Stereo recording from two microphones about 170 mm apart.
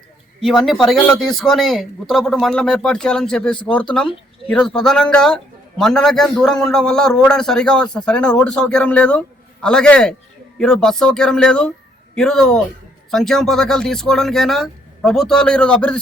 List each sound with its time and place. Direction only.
0.3 s speech: centre (ahead or behind)